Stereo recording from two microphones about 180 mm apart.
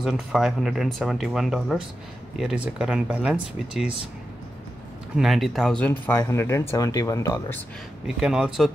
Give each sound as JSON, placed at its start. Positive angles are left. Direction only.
{"t": 0.0, "sound": "speech", "side_deg": -5}
{"t": 5.1, "sound": "speech", "side_deg": 0}
{"t": 8.2, "sound": "speech", "side_deg": -5}